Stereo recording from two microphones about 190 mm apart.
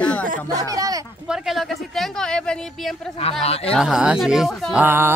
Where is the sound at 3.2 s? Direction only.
30° left (ahead or behind).